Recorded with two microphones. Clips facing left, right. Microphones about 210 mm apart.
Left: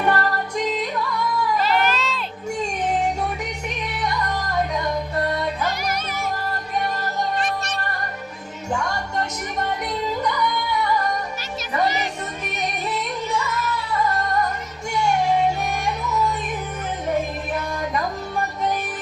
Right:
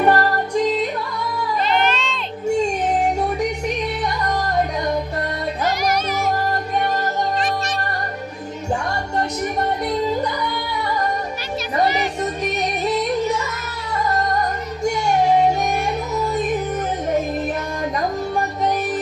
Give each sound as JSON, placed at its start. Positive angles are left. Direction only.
{"t": 0.0, "sound": "music", "side_deg": -35}
{"t": 1.6, "sound": "music", "side_deg": 5}
{"t": 8.7, "sound": "music", "side_deg": -35}